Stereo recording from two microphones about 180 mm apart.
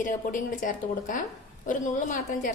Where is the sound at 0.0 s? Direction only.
45° left (ahead or behind).